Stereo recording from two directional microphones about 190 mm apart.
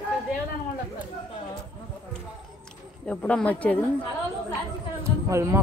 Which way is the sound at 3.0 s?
5° left (ahead or behind).